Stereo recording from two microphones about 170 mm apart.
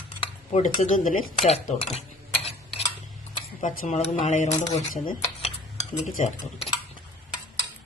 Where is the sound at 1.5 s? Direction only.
35° left (ahead or behind).